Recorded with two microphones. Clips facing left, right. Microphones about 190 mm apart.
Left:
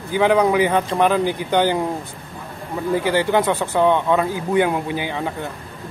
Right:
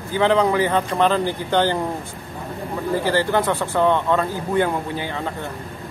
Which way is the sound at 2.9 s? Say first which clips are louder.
Left 2 dB; 15° left (ahead or behind).